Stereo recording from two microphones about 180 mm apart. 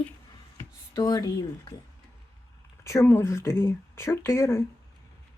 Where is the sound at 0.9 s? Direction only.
20° left (ahead or behind).